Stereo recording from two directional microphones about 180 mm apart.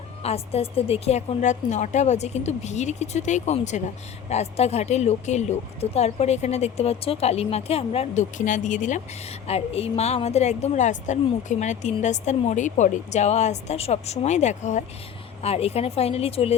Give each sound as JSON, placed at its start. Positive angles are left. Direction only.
{"t": 0.2, "sound": "a woman's voice", "side_deg": 35}